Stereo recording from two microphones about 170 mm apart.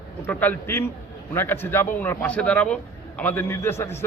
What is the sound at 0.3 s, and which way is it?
A man's voice, 10° left (ahead or behind).